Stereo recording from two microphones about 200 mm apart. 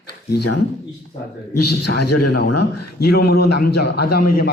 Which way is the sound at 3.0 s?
55° left (ahead or behind).